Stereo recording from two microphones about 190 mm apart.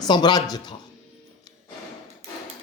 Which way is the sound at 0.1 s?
20° left (ahead or behind).